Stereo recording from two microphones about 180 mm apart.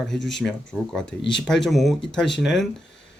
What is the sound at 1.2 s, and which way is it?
Speech, 75° left (ahead or behind).